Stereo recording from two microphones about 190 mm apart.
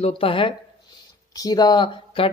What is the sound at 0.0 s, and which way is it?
Speech, 30° left (ahead or behind).